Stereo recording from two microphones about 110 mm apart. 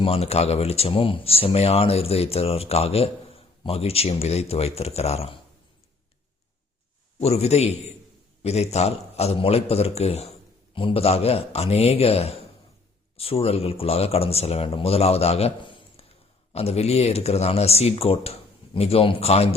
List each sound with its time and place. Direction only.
0.0 s speech: 65° left (ahead or behind)
7.2 s speech: 70° left (ahead or behind)
10.8 s speech: 55° left (ahead or behind)